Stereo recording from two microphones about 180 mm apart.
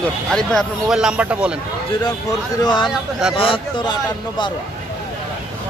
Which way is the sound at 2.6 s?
25° left (ahead or behind).